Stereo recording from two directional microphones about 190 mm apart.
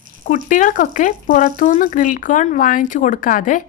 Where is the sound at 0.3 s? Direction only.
45° left (ahead or behind).